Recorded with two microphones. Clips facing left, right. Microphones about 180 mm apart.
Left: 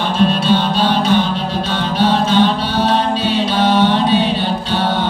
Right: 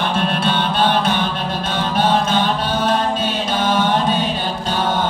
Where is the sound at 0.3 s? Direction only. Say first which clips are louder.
Left 4 dB; 55° right (ahead or behind).